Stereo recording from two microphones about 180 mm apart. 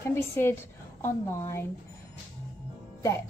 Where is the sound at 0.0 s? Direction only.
15° left (ahead or behind).